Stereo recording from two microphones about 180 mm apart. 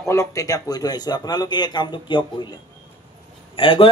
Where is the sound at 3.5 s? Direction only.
30° left (ahead or behind).